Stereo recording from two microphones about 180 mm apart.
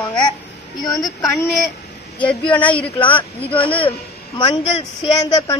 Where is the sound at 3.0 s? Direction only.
30° left (ahead or behind).